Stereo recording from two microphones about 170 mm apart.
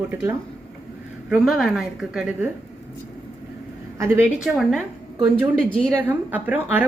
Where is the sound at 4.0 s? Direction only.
15° right (ahead or behind).